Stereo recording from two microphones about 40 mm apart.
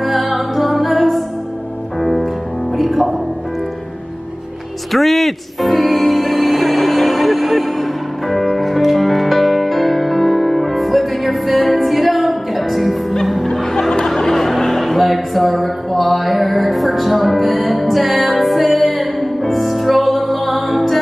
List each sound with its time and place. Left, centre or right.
0.0 s music: centre
4.9 s music: centre